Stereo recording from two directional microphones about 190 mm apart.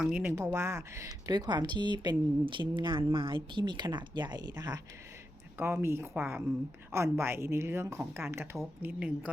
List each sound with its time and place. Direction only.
0.0 s a woman's voice: 5° right (ahead or behind)